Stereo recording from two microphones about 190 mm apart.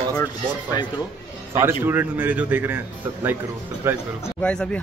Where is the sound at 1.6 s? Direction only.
10° right (ahead or behind).